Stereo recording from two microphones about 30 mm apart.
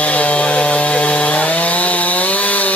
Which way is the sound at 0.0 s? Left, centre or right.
Left.